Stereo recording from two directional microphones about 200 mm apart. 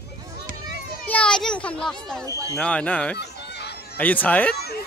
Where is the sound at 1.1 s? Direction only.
5° left (ahead or behind).